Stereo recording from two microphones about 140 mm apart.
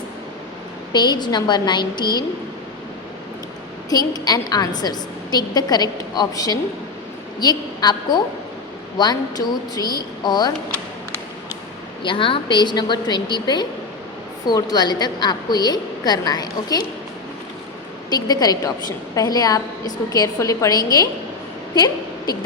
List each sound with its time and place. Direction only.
0.9 s a woman's voice: 30° left (ahead or behind)
3.8 s a woman's voice: 25° left (ahead or behind)
12.0 s a woman's voice: 40° left (ahead or behind)
18.1 s a woman's voice: 30° left (ahead or behind)